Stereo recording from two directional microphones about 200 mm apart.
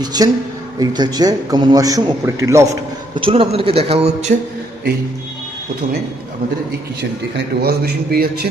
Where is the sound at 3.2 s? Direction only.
25° right (ahead or behind).